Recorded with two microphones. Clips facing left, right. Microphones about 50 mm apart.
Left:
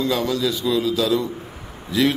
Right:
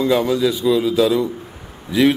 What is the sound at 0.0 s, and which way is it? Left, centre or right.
A man's voice, centre.